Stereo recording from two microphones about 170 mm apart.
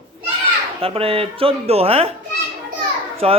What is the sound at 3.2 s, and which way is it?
Speech, 35° right (ahead or behind).